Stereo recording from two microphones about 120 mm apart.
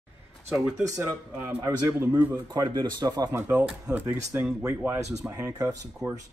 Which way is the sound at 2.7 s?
35° right (ahead or behind).